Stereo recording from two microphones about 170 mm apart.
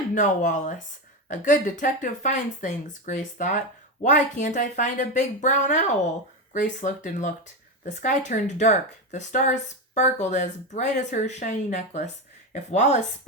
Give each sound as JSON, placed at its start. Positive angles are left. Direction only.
{"t": 0.1, "sound": "speech", "side_deg": 50}